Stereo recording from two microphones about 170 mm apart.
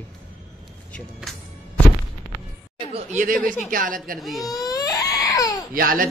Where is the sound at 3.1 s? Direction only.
50° right (ahead or behind).